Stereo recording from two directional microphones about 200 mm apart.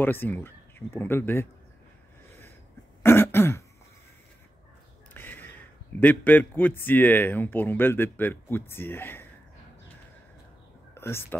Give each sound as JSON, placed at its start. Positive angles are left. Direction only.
{"t": 0.0, "sound": "speech", "side_deg": 10}
{"t": 3.0, "sound": "throat clearing", "side_deg": 10}
{"t": 5.1, "sound": "a man's voice", "side_deg": 10}
{"t": 11.0, "sound": "speech", "side_deg": 10}